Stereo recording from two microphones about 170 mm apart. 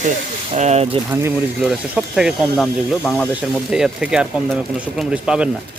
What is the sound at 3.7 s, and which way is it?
Speech, 5° right (ahead or behind).